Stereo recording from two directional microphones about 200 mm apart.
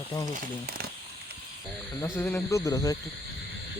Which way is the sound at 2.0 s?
10° left (ahead or behind).